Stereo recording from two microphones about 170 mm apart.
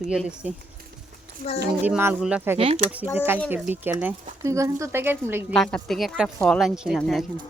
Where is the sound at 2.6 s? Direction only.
35° right (ahead or behind).